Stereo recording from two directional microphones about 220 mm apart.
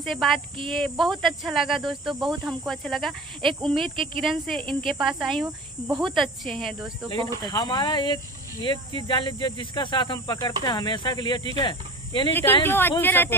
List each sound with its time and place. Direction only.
0.0 s speech: centre (ahead or behind)
3.8 s speech: 25° right (ahead or behind)
4.2 s speech: centre (ahead or behind)
7.4 s speech: 20° left (ahead or behind)
12.3 s speech: 10° left (ahead or behind)